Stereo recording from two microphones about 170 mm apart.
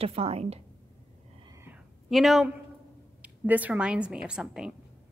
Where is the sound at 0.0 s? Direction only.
35° right (ahead or behind).